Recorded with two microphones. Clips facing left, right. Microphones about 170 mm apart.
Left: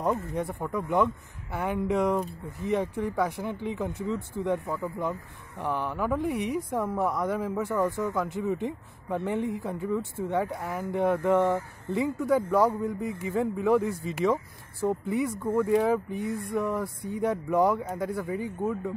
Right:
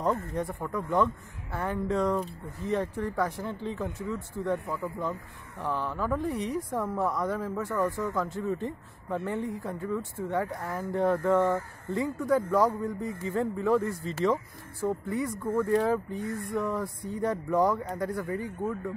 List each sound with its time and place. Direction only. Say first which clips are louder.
0.3 s speech: left 1 dB; 20° left (ahead or behind)
12.4 s speech: left 1 dB; 20° left (ahead or behind)
16.8 s speech: left 2 dB; 5° left (ahead or behind)
17.5 s speech: left 1 dB; 20° left (ahead or behind)
17.7 s speech: left 1 dB; 5° left (ahead or behind)